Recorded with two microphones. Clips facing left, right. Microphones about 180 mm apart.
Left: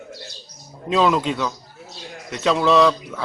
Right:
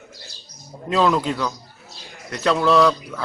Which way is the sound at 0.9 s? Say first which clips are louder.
Left 1 dB; centre (ahead or behind).